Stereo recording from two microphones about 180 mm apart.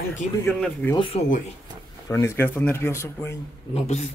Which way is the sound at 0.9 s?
30° left (ahead or behind).